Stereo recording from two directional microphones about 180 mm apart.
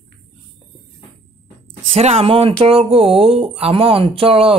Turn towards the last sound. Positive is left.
turn(degrees=-30)  # may be behind; listen again after turning